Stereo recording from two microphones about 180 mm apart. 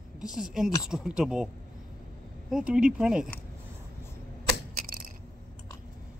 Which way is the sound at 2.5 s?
5° right (ahead or behind).